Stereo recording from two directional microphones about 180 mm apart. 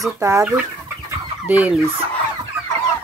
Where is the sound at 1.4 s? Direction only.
10° right (ahead or behind).